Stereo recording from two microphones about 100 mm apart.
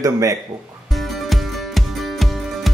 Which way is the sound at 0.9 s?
Centre (ahead or behind).